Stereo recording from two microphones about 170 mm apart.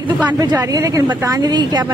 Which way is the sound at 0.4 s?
20° right (ahead or behind).